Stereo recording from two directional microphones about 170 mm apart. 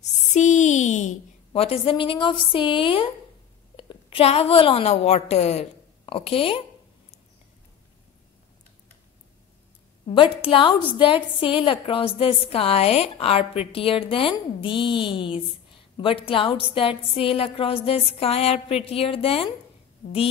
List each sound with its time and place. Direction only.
0.0 s a woman's voice: 45° left (ahead or behind)
10.4 s a woman's voice: 30° left (ahead or behind)